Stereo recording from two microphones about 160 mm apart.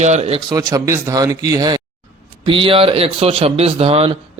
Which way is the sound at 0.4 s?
25° right (ahead or behind).